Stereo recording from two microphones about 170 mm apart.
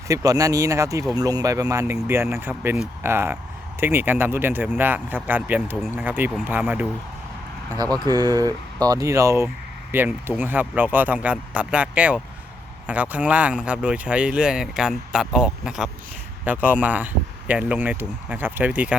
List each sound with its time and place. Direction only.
0.1 s speech: 20° right (ahead or behind)
8.1 s speech: 20° right (ahead or behind)